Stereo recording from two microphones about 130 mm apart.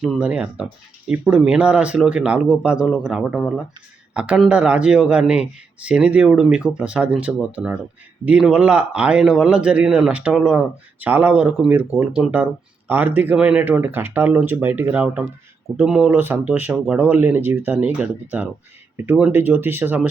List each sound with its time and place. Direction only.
0.2 s speech: 10° right (ahead or behind)